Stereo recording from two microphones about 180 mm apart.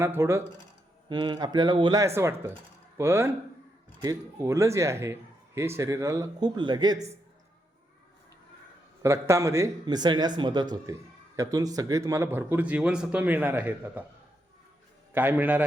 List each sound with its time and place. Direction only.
0.0 s speech: 15° right (ahead or behind)
9.0 s speech: 15° right (ahead or behind)
15.1 s speech: 10° right (ahead or behind)